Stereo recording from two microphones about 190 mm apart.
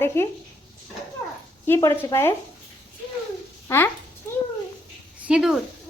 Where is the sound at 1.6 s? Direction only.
10° left (ahead or behind).